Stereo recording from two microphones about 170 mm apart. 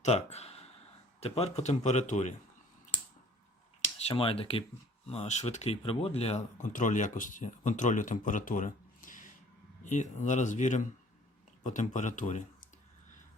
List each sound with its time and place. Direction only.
0.0 s speech: 40° left (ahead or behind)
3.8 s speech: 35° left (ahead or behind)